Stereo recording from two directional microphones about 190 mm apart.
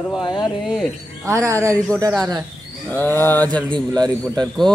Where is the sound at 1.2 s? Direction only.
15° right (ahead or behind).